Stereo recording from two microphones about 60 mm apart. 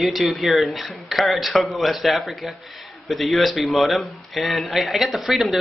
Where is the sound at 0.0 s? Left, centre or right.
Centre.